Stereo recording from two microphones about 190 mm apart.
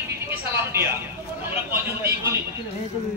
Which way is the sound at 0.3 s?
10° right (ahead or behind).